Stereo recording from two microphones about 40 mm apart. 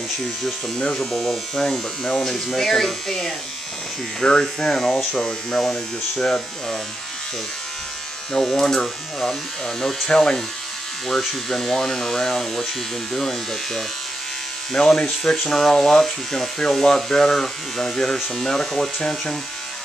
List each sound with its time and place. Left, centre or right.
0.9 s speech: centre
8.3 s speech: centre